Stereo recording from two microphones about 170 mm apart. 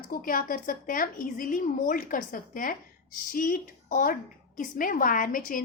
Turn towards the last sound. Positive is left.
turn(degrees=55)  # may be behind; listen again after turning